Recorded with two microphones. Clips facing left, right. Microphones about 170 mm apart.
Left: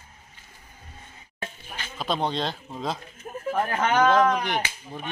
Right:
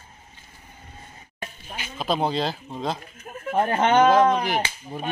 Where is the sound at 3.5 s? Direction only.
25° right (ahead or behind).